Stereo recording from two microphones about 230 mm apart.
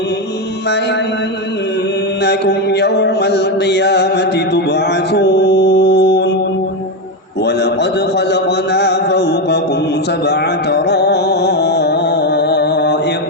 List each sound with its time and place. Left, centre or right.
2.2 s mantra: left
7.4 s a sound: left
8.3 s mantra: left
10.2 s music: left